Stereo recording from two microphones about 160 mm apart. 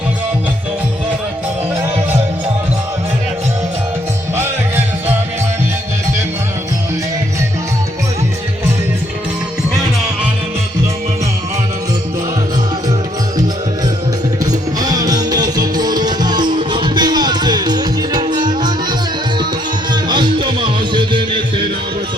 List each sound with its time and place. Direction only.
14.8 s music: 25° right (ahead or behind)